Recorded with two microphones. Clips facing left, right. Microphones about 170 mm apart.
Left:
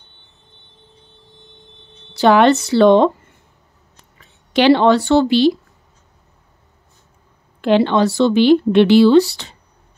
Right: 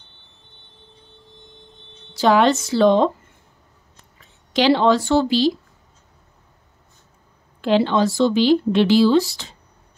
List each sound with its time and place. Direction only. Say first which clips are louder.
2.1 s speech: left 4 dB; 65° left (ahead or behind)
4.6 s speech: left 4 dB; 65° left (ahead or behind)
7.6 s speech: left 3 dB; 60° left (ahead or behind)